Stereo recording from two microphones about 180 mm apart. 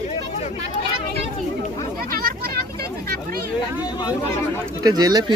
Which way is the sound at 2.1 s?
55° right (ahead or behind).